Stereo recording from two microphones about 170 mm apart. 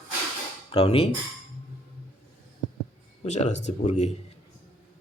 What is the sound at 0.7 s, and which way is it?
Speech, 35° left (ahead or behind).